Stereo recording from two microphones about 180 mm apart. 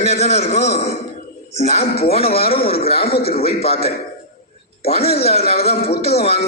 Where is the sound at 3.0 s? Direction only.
60° left (ahead or behind).